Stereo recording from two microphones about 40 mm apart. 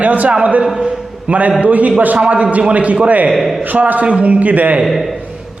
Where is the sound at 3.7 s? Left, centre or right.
Right.